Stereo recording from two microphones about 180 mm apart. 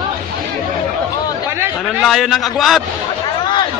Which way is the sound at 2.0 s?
Centre (ahead or behind).